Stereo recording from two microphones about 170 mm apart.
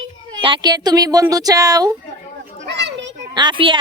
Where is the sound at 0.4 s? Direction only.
25° right (ahead or behind).